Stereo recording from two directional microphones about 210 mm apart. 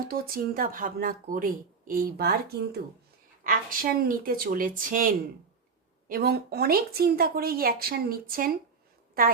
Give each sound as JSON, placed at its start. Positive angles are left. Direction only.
{"t": 0.0, "sound": "speech", "side_deg": -45}